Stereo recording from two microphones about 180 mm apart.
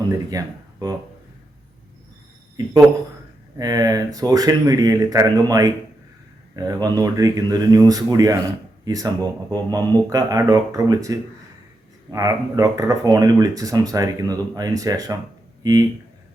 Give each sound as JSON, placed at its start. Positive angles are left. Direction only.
{"t": 0.1, "sound": "speech", "side_deg": -20}
{"t": 3.6, "sound": "speech", "side_deg": -20}